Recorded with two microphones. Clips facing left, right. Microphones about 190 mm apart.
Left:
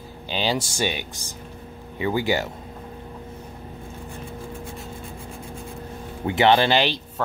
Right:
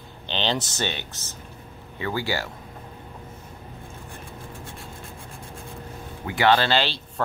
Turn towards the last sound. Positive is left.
turn(degrees=15)  # may be behind; listen again after turning